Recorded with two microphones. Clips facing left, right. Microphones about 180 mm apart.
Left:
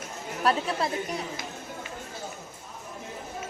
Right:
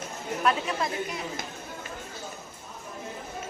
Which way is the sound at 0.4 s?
35° left (ahead or behind).